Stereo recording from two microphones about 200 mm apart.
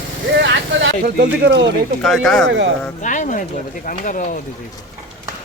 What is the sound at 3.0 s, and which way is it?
Speech, 40° left (ahead or behind).